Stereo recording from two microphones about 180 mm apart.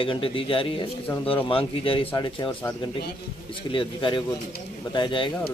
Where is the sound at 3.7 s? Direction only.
25° left (ahead or behind).